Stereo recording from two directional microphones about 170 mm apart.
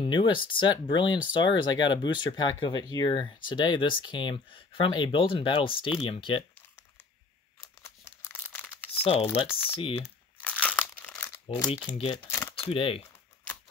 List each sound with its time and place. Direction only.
0.0 s speech: 30° left (ahead or behind)
7.8 s tearing: 15° left (ahead or behind)
9.0 s speech: 35° left (ahead or behind)
9.5 s speech: 10° left (ahead or behind)
9.8 s speech: 30° left (ahead or behind)
10.0 s crumpling: 10° left (ahead or behind)
11.9 s speech: 35° left (ahead or behind)
12.3 s shuffling cards: 15° left (ahead or behind)
12.5 s speech: 35° left (ahead or behind)